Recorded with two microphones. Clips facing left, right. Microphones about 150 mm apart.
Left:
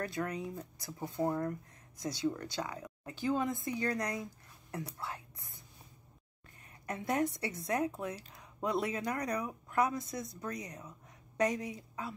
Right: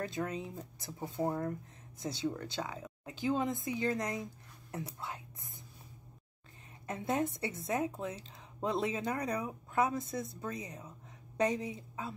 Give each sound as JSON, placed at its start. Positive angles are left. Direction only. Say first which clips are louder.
{"t": 0.0, "sound": "speech", "louder": "even", "side_deg": -20}
{"t": 6.9, "sound": "a woman's voice", "louder": "left 1 dB", "side_deg": -25}